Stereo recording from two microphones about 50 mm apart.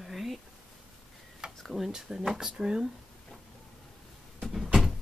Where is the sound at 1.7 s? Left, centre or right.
Centre.